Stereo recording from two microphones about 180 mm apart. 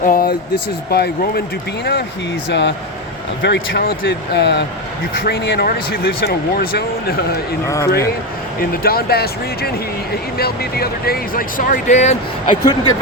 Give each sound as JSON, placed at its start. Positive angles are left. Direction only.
{"t": 0.0, "sound": "speech", "side_deg": 55}
{"t": 8.7, "sound": "speech", "side_deg": 55}
{"t": 12.5, "sound": "speech", "side_deg": 20}